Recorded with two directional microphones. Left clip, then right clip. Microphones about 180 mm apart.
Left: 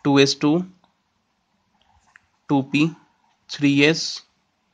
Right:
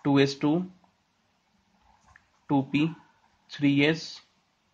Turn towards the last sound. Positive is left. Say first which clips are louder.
# left 7 dB
turn(degrees=50)  # may be behind; listen again after turning